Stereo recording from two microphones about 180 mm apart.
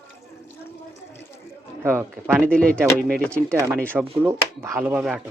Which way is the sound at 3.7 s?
5° left (ahead or behind).